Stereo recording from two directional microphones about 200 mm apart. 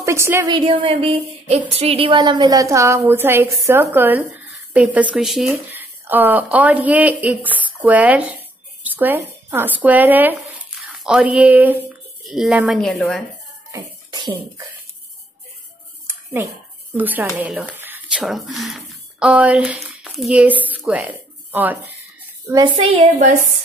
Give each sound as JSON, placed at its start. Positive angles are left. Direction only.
{"t": 0.0, "sound": "a woman's voice", "side_deg": -15}
{"t": 0.5, "sound": "speech", "side_deg": -25}
{"t": 13.7, "sound": "beatboxing", "side_deg": -20}
{"t": 16.9, "sound": "speech", "side_deg": -10}
{"t": 22.8, "sound": "a woman's voice", "side_deg": -30}